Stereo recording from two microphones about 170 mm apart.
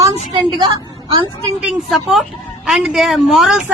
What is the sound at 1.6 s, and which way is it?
A woman's voice, centre (ahead or behind).